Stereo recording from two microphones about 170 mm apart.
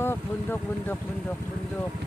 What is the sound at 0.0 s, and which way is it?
Speech, 10° left (ahead or behind).